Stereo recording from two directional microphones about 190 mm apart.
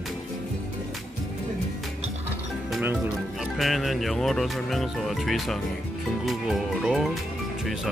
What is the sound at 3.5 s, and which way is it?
Speech, centre (ahead or behind).